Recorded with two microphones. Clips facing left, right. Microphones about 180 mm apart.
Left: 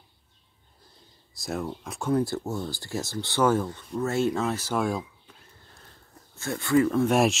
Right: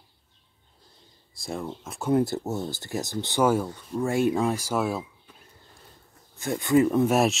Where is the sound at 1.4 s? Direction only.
Centre (ahead or behind).